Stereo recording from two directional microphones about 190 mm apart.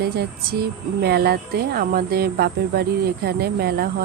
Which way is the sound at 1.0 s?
55° right (ahead or behind).